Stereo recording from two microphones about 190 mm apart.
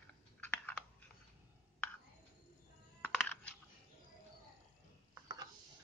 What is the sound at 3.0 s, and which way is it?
Computer keyboard, 5° left (ahead or behind).